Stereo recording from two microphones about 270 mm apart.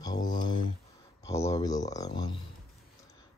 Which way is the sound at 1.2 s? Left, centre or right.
Centre.